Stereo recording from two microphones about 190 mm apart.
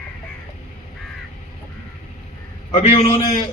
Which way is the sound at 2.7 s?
30° left (ahead or behind).